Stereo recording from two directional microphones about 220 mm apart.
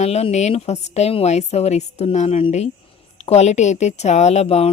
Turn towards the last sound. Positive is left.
turn(degrees=30)  # may be behind; listen again after turning